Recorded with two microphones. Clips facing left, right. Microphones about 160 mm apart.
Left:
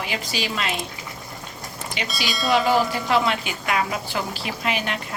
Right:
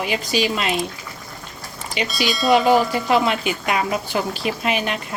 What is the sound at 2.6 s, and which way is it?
A woman's voice, 15° right (ahead or behind).